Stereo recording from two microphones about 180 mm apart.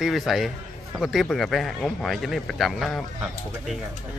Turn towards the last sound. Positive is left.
turn(degrees=0)  # may be behind; listen again after turning